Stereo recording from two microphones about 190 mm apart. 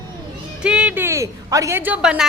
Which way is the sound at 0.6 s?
5° right (ahead or behind).